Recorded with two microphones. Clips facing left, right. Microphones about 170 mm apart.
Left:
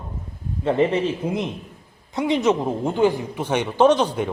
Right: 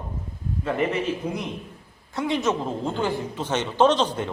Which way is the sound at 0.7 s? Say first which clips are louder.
Left 5 dB; 30° left (ahead or behind).